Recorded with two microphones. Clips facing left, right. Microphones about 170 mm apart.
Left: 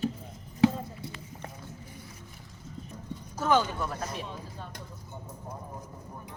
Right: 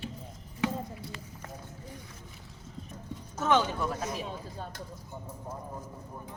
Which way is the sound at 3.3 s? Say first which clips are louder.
Left 1 dB; centre (ahead or behind).